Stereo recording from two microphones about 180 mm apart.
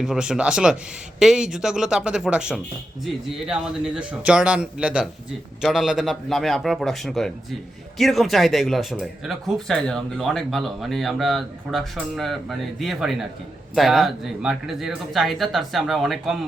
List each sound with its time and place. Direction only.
0.0 s speech: 5° right (ahead or behind)